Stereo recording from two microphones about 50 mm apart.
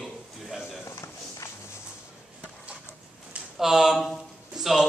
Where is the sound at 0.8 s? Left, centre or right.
Left.